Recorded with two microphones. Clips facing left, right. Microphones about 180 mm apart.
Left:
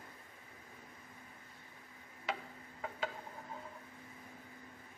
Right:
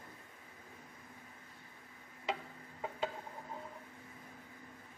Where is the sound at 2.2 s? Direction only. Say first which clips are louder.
Right 2 dB; 25° right (ahead or behind).